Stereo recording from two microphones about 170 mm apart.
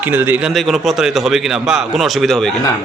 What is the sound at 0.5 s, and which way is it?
A man's voice, centre (ahead or behind).